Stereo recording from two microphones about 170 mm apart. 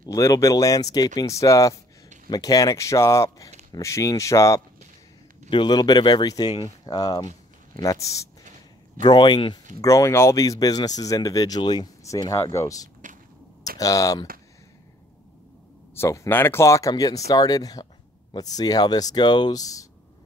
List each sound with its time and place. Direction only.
0.0 s speech: 20° left (ahead or behind)
15.9 s speech: 15° left (ahead or behind)